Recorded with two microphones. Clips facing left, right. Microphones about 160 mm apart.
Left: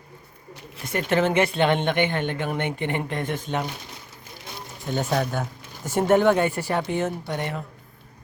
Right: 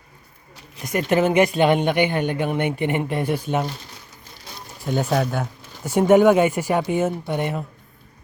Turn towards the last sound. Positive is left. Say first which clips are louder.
# right 4 dB
turn(degrees=-15)  # may be behind; listen again after turning